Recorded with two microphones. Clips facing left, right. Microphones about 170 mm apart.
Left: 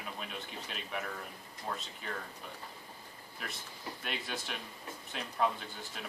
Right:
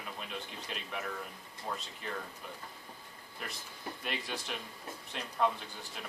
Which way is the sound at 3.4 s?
Centre (ahead or behind).